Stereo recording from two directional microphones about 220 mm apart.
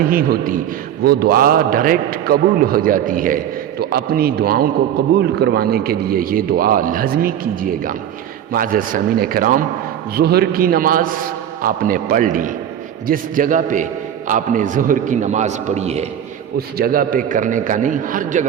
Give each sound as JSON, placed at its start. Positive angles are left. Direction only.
{"t": 0.0, "sound": "a man's voice", "side_deg": -40}
{"t": 16.6, "sound": "a man's voice", "side_deg": -45}